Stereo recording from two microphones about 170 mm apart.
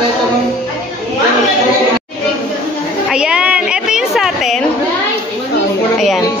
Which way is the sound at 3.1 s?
5° right (ahead or behind).